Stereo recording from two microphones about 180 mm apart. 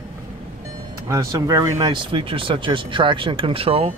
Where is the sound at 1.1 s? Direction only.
20° right (ahead or behind).